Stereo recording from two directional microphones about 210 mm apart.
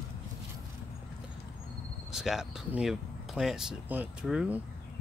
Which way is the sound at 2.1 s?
Centre (ahead or behind).